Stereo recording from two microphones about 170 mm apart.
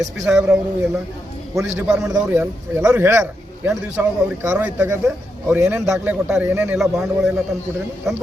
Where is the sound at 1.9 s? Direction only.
Centre (ahead or behind).